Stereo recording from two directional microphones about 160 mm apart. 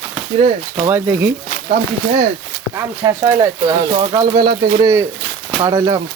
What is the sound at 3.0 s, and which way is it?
Speech, 25° right (ahead or behind).